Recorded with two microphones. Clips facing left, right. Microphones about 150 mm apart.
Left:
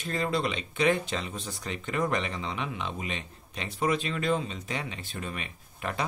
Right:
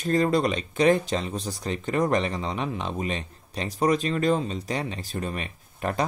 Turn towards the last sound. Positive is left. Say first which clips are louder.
# right 6 dB
turn(degrees=-40)  # may be behind; listen again after turning